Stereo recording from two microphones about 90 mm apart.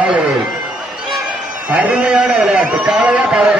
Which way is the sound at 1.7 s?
15° right (ahead or behind).